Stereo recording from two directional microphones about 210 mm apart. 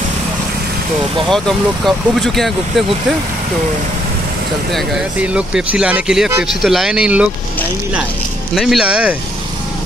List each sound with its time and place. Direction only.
1.9 s speech: centre (ahead or behind)
4.7 s speech: 5° right (ahead or behind)
8.5 s speech: centre (ahead or behind)